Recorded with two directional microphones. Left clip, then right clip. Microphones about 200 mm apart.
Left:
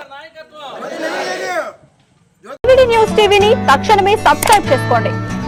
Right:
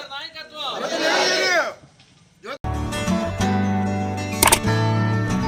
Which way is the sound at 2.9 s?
Centre (ahead or behind).